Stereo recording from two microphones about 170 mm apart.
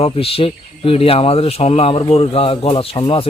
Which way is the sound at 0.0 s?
35° left (ahead or behind).